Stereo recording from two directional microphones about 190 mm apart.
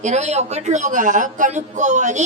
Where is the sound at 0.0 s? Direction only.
35° right (ahead or behind).